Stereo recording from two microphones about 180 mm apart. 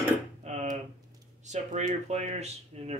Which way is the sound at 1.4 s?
40° right (ahead or behind).